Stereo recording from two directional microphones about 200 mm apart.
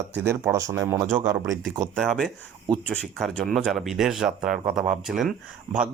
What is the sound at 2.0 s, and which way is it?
Speech, centre (ahead or behind).